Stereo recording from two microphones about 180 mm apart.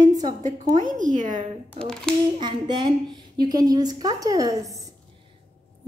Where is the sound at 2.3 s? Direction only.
25° right (ahead or behind).